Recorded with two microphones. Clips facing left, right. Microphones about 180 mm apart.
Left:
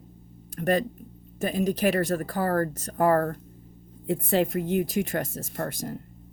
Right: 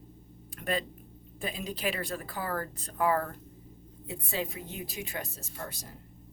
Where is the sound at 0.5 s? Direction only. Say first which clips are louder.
Left 9 dB; 45° left (ahead or behind).